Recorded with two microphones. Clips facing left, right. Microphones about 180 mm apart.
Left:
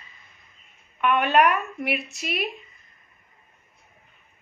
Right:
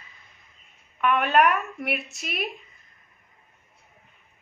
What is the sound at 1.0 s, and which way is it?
A woman's voice, centre (ahead or behind).